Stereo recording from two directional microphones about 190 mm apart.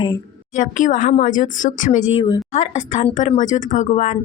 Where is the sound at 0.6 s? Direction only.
40° left (ahead or behind).